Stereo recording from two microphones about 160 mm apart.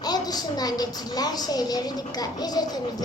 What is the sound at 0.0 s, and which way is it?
A woman's voice, 25° left (ahead or behind).